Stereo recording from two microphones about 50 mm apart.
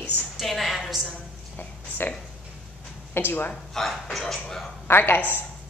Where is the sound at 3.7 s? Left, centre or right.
Centre.